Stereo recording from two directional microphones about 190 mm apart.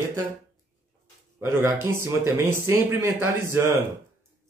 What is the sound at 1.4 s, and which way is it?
Speech, 15° right (ahead or behind).